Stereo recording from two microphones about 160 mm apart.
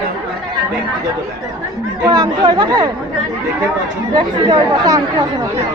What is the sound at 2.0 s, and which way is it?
Speech, 25° right (ahead or behind).